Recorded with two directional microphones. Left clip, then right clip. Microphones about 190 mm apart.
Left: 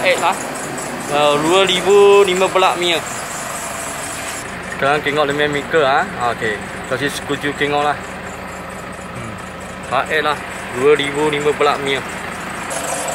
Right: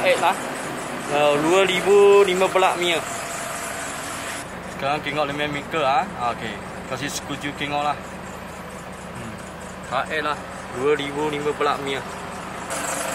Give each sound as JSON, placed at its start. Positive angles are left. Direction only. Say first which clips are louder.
{"t": 0.0, "sound": "speech", "louder": "left 4 dB", "side_deg": -10}
{"t": 4.8, "sound": "speech", "louder": "left 8 dB", "side_deg": 20}
{"t": 9.9, "sound": "speech", "louder": "left 7 dB", "side_deg": 25}